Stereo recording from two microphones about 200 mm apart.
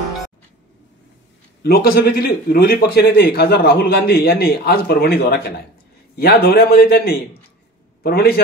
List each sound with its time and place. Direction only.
1.6 s speech: 50° left (ahead or behind)